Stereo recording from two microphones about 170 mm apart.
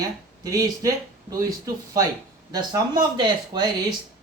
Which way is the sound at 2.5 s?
25° right (ahead or behind).